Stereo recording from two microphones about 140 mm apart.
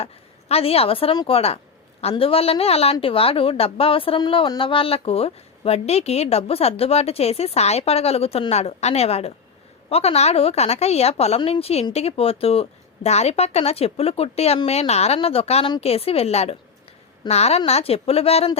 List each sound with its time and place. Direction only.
0.0 s a woman's voice: 45° left (ahead or behind)